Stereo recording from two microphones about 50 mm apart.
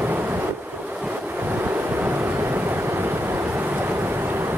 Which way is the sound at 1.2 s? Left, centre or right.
Right.